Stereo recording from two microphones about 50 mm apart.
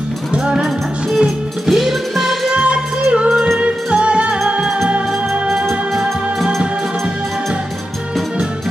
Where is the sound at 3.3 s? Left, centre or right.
Centre.